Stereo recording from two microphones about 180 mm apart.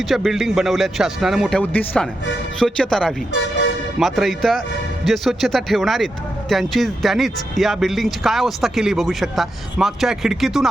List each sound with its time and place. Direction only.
0.0 s speech: centre (ahead or behind)